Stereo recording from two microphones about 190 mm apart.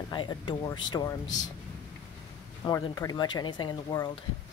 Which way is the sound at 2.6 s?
20° left (ahead or behind).